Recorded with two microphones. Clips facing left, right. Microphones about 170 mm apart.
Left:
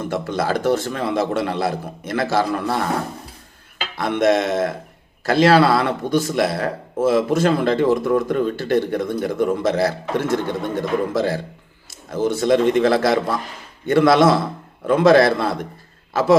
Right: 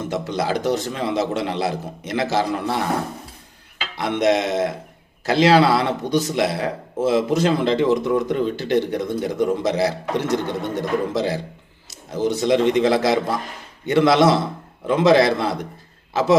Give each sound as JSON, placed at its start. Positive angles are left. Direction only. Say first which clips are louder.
{"t": 0.0, "sound": "speech", "louder": "left 1 dB", "side_deg": -20}
{"t": 3.9, "sound": "a man's voice", "louder": "left 1 dB", "side_deg": -20}